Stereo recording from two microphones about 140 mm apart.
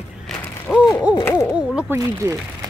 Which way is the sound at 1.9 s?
25° right (ahead or behind).